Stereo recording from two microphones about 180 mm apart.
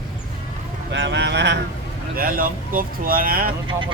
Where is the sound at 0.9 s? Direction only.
75° right (ahead or behind).